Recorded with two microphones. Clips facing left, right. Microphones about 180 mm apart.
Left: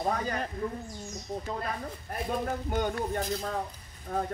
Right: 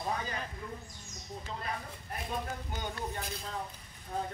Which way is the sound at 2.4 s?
55° left (ahead or behind).